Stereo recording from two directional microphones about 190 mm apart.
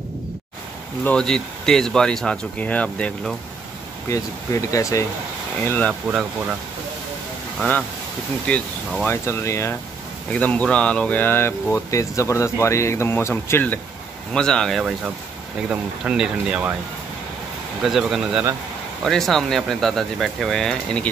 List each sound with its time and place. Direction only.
1.0 s speech: 5° left (ahead or behind)
4.1 s speech: 15° left (ahead or behind)
7.5 s speech: 10° left (ahead or behind)
17.8 s speech: centre (ahead or behind)